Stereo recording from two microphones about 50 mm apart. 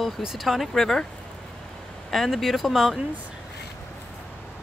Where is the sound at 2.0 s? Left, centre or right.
Centre.